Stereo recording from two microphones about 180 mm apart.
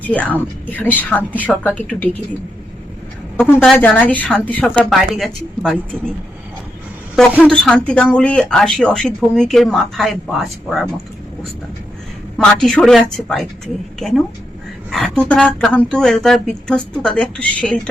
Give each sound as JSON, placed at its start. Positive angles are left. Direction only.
{"t": 0.1, "sound": "speech", "side_deg": 10}
{"t": 3.4, "sound": "speech", "side_deg": 0}
{"t": 3.8, "sound": "speech", "side_deg": 10}
{"t": 7.2, "sound": "speech", "side_deg": 5}
{"t": 12.4, "sound": "speech", "side_deg": 5}
{"t": 14.8, "sound": "speech", "side_deg": 0}